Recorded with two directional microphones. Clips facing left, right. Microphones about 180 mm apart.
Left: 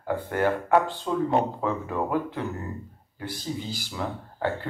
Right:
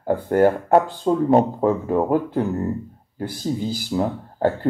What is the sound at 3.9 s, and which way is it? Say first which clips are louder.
Speech: right 10 dB; 40° right (ahead or behind).